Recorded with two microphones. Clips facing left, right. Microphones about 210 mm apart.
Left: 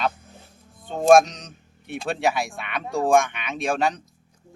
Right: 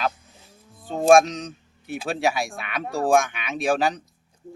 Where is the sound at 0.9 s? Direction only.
Centre (ahead or behind).